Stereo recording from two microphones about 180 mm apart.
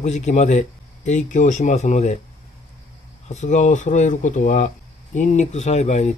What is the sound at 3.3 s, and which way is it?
Speech, 40° left (ahead or behind).